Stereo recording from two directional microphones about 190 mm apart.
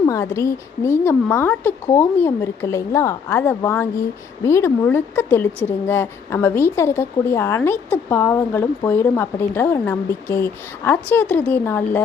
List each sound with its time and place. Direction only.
0.0 s speech: 15° left (ahead or behind)